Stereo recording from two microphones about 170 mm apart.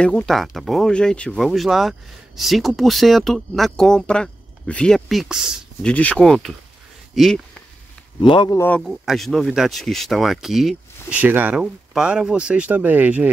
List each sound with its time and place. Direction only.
0.0 s speech: 5° left (ahead or behind)
8.2 s speech: 30° left (ahead or behind)
8.5 s speech: 10° left (ahead or behind); by 13.3 s 10° right (ahead or behind)